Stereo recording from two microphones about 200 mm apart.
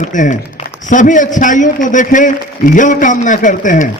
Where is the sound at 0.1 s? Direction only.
40° left (ahead or behind).